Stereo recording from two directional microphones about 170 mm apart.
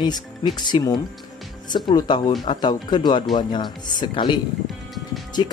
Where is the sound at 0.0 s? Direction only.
25° left (ahead or behind).